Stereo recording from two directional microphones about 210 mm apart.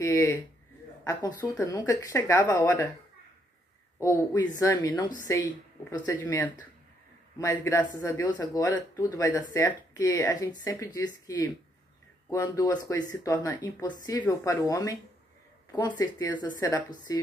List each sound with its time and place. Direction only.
0.0 s speech: 15° left (ahead or behind)
4.0 s speech: 15° left (ahead or behind)
16.0 s speech: 20° left (ahead or behind)